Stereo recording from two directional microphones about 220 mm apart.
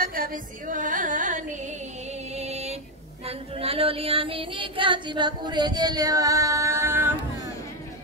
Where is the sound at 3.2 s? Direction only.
25° right (ahead or behind); by 7.1 s 10° right (ahead or behind).